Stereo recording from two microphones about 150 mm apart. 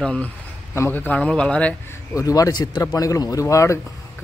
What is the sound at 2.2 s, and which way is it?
Speech, 20° left (ahead or behind).